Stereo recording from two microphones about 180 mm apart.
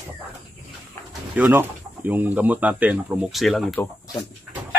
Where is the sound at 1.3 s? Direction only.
10° right (ahead or behind).